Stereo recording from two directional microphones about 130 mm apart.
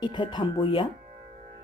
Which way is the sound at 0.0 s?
35° left (ahead or behind).